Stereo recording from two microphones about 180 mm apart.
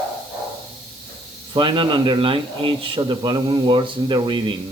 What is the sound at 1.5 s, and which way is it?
Speech, 25° right (ahead or behind).